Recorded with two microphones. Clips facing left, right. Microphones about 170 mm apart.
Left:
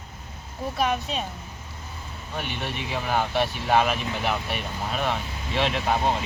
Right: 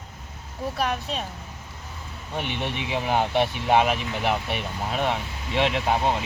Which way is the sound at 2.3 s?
20° right (ahead or behind).